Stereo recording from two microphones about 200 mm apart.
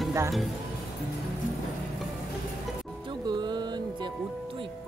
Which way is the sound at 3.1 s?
20° right (ahead or behind).